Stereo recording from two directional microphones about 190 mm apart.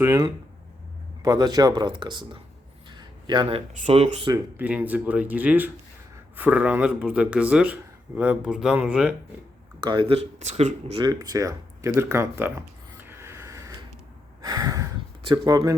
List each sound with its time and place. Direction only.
0.0 s speech: 15° right (ahead or behind)
2.9 s a sound: 25° right (ahead or behind)
3.8 s speech: 35° right (ahead or behind)
4.3 s speech: 10° right (ahead or behind)
9.9 s speech: 30° right (ahead or behind)
11.0 s speech: 20° right (ahead or behind)
13.1 s a sound: 15° right (ahead or behind)
14.4 s speech: 20° right (ahead or behind)